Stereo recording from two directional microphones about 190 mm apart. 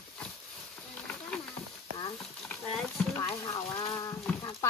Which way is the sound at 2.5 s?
5° left (ahead or behind).